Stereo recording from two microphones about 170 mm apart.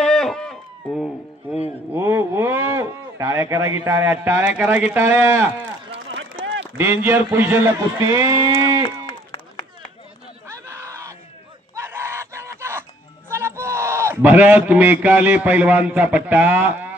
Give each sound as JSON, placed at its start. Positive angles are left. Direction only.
{"t": 0.0, "sound": "a sound", "side_deg": 5}
{"t": 1.9, "sound": "a man's voice", "side_deg": -15}
{"t": 6.8, "sound": "a man's voice", "side_deg": -15}
{"t": 10.4, "sound": "a sound", "side_deg": -15}
{"t": 11.7, "sound": "screaming", "side_deg": -15}
{"t": 13.3, "sound": "a man's voice", "side_deg": -15}